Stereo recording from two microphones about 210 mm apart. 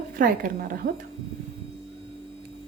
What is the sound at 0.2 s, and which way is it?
Speech, 40° right (ahead or behind).